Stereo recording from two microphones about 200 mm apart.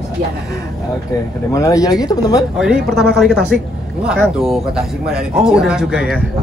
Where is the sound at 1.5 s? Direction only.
15° left (ahead or behind).